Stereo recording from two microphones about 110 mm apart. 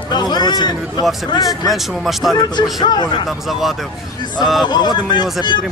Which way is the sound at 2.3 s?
45° left (ahead or behind).